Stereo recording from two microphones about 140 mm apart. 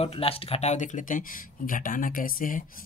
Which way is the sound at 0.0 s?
45° left (ahead or behind).